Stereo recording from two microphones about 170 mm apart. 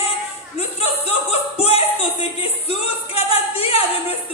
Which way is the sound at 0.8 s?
35° left (ahead or behind).